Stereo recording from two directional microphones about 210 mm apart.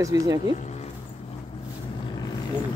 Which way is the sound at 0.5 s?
35° left (ahead or behind).